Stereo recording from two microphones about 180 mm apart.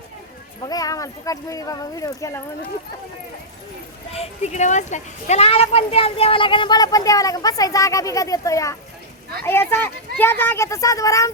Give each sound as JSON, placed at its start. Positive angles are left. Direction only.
{"t": 0.6, "sound": "a woman's voice", "side_deg": 20}
{"t": 4.1, "sound": "a woman's voice", "side_deg": 35}